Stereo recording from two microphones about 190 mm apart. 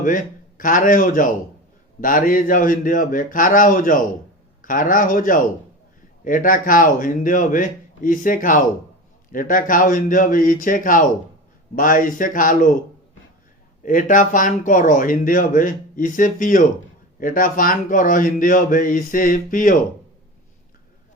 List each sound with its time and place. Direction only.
0.0 s a man's voice: 45° left (ahead or behind)
13.8 s speech: 45° left (ahead or behind)